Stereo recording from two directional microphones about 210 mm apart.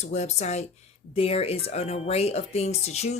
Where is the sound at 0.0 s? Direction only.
30° left (ahead or behind).